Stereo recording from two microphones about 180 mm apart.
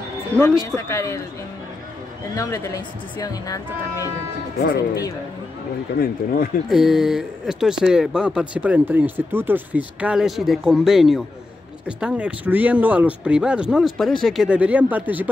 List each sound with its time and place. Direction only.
0.3 s speech: 15° right (ahead or behind)
0.7 s a man's voice: 15° left (ahead or behind)
2.3 s speech: 15° left (ahead or behind)
5.9 s speech: 55° left (ahead or behind)
6.7 s speech: centre (ahead or behind)